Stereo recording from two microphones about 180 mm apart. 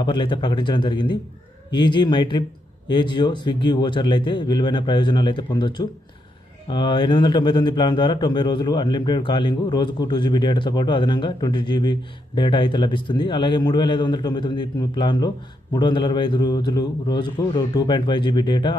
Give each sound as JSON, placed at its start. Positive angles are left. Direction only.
{"t": 0.0, "sound": "speech", "side_deg": 25}